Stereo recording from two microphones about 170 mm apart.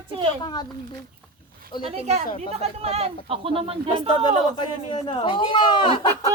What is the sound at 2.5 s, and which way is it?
Speech, 40° right (ahead or behind).